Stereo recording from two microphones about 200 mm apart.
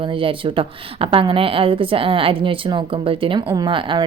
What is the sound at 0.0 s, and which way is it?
A woman's voice, 25° right (ahead or behind).